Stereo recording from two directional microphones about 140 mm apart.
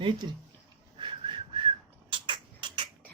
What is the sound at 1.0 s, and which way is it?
Whistling, 35° right (ahead or behind).